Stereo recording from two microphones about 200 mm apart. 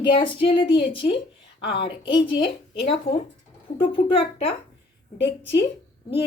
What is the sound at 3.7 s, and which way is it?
Speech, 25° left (ahead or behind).